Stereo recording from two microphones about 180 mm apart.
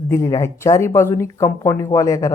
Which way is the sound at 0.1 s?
15° left (ahead or behind).